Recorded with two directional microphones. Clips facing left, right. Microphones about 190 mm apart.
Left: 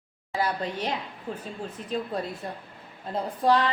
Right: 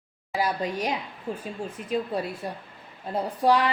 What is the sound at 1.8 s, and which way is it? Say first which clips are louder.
Speech: right 2 dB; 30° left (ahead or behind).